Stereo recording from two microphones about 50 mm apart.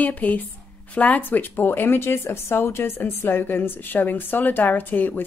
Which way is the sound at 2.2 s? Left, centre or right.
Left.